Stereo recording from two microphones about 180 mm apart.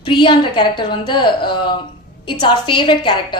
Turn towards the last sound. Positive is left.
turn(degrees=25)  # may be behind; listen again after turning